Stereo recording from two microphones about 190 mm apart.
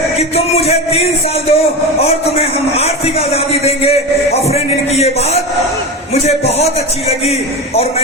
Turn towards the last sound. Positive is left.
turn(degrees=35)  # may be behind; listen again after turning